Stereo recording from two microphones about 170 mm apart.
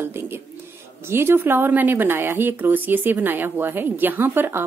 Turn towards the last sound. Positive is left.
turn(degrees=-10)  # may be behind; listen again after turning